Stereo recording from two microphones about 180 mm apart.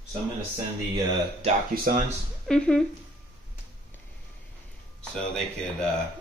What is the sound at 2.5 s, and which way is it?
Speech, 5° left (ahead or behind).